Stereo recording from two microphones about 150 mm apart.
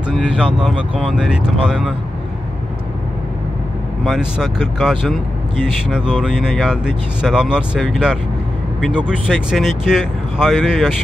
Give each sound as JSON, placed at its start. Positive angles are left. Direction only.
{"t": 0.1, "sound": "speech", "side_deg": -5}
{"t": 4.0, "sound": "speech", "side_deg": -5}